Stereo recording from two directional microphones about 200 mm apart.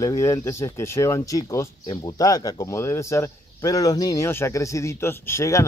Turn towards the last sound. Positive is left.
turn(degrees=15)  # may be behind; listen again after turning